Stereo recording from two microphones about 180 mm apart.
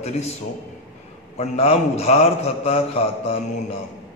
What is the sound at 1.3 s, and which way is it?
A man's voice, 35° left (ahead or behind).